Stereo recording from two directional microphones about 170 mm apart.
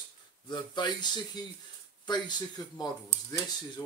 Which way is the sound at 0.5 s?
25° left (ahead or behind).